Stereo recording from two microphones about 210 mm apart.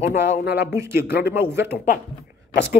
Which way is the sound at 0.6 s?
10° right (ahead or behind).